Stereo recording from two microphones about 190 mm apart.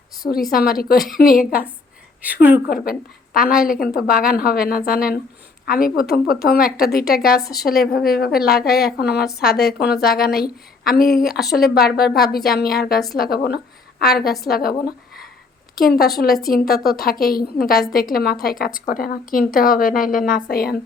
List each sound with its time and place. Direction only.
0.5 s a woman's voice: 50° left (ahead or behind)
2.2 s a woman's voice: 10° right (ahead or behind)
2.6 s a woman's voice: 50° left (ahead or behind)